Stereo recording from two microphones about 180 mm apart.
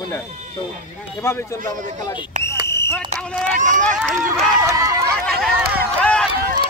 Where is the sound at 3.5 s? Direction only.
45° right (ahead or behind).